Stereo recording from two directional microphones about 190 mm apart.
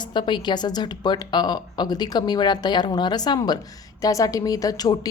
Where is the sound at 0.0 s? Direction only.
25° left (ahead or behind).